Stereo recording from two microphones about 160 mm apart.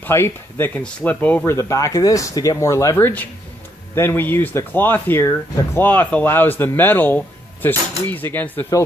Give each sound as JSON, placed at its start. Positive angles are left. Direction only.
{"t": 0.0, "sound": "speech", "side_deg": 15}